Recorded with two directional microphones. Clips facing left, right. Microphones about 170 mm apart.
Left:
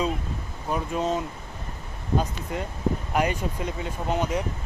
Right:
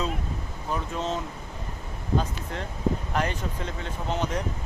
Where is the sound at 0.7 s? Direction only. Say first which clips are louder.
Left 4 dB; 10° left (ahead or behind).